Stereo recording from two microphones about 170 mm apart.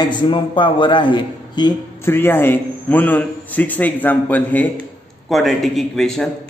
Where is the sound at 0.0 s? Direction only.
25° left (ahead or behind).